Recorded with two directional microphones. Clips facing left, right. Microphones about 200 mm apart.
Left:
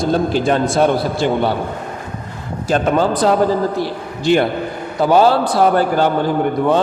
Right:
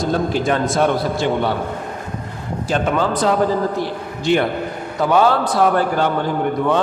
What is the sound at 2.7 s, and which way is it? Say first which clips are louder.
A man's voice: left 4 dB; 35° left (ahead or behind).